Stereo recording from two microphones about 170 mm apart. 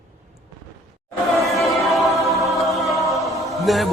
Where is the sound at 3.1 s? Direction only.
Centre (ahead or behind).